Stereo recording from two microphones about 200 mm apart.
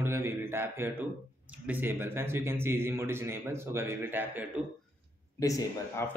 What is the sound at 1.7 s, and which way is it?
A man's voice, 10° right (ahead or behind).